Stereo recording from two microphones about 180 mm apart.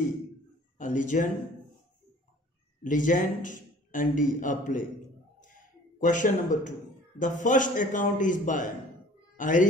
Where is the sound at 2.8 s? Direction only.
45° left (ahead or behind).